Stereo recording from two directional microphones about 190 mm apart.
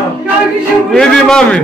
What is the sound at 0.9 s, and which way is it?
Speech, 5° left (ahead or behind).